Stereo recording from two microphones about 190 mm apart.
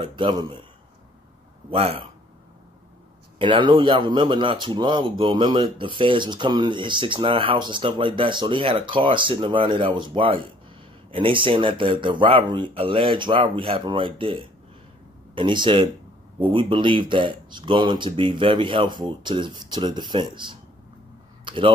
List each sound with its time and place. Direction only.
0.0 s speech: 25° right (ahead or behind)
1.7 s speech: 30° right (ahead or behind)
3.3 s speech: 25° right (ahead or behind)